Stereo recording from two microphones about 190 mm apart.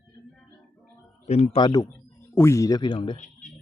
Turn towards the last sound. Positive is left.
turn(degrees=40)  # may be behind; listen again after turning